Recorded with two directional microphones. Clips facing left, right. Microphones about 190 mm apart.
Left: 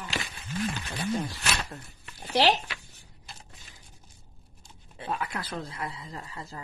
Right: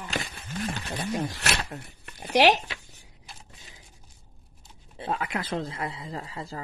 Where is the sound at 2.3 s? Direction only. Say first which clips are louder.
Right 4 dB; 15° right (ahead or behind).